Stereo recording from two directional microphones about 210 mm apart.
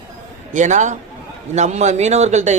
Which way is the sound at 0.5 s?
35° right (ahead or behind).